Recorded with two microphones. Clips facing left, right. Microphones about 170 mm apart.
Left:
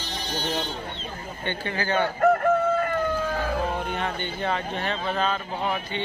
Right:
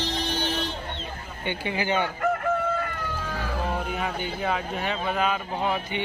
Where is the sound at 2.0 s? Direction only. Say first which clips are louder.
Left 5 dB; 50° left (ahead or behind).